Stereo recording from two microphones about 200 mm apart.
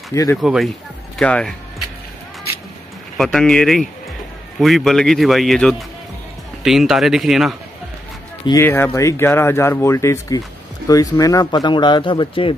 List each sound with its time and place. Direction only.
0.1 s speech: 15° left (ahead or behind)
0.4 s speech: centre (ahead or behind)
3.2 s speech: centre (ahead or behind)
8.5 s speech: 10° left (ahead or behind)